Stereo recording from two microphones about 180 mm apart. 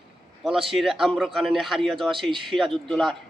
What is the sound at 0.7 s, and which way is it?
A man's voice, centre (ahead or behind).